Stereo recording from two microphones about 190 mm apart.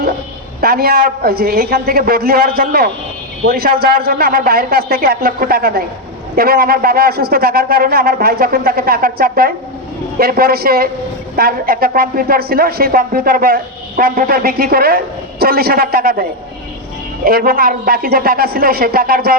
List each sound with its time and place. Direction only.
0.6 s speech: 55° right (ahead or behind)
17.2 s speech: 50° right (ahead or behind)